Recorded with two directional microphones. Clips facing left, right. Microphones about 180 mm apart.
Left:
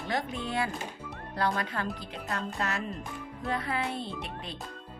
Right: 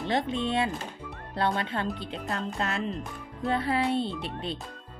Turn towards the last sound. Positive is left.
turn(degrees=-30)  # may be behind; listen again after turning